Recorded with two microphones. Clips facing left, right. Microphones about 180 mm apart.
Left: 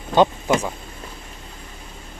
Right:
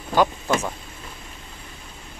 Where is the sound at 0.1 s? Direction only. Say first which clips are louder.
Left 3 dB; 20° left (ahead or behind).